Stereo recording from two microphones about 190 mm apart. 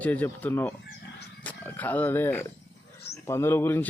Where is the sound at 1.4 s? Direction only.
10° left (ahead or behind).